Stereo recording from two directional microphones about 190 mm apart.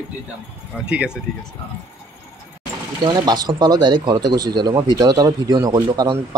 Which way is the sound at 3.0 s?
20° right (ahead or behind).